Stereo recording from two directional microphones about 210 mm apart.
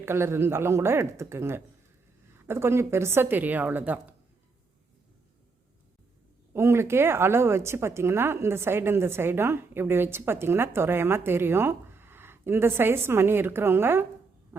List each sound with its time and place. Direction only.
0.0 s a woman's voice: 10° right (ahead or behind)
6.5 s a woman's voice: 10° right (ahead or behind)